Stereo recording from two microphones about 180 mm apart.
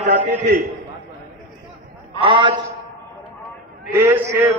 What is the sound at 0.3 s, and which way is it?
Speech, 60° right (ahead or behind).